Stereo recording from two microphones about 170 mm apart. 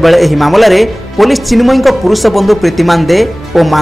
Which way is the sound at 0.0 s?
Centre (ahead or behind).